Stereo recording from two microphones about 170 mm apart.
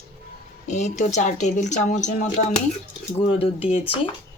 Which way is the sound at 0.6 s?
45° left (ahead or behind).